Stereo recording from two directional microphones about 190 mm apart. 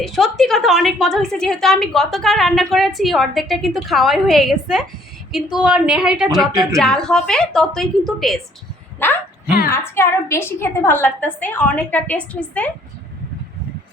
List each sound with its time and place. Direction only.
0.0 s a woman's voice: centre (ahead or behind)
6.5 s speech: 15° right (ahead or behind)
6.7 s a woman's voice: 5° left (ahead or behind)
9.0 s a sound: 10° left (ahead or behind)
9.6 s a woman's voice: 15° left (ahead or behind)